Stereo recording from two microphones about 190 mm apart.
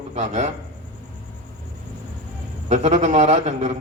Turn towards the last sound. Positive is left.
turn(degrees=-35)  # may be behind; listen again after turning